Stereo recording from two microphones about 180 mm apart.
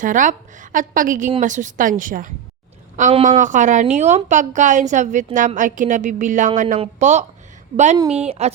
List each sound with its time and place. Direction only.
0.0 s a woman's voice: 45° right (ahead or behind)
8.0 s speech: 5° right (ahead or behind)
8.3 s speech: 35° right (ahead or behind)